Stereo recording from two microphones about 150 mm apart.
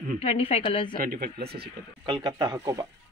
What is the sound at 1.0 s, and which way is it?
Speech, 80° right.